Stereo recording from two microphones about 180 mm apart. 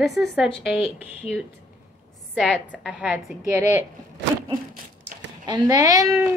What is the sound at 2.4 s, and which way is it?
A woman's voice, 5° right (ahead or behind).